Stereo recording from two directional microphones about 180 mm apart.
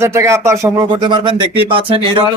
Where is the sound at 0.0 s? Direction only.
15° right (ahead or behind).